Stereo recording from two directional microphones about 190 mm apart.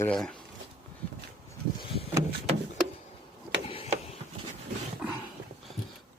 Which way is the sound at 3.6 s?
30° left (ahead or behind).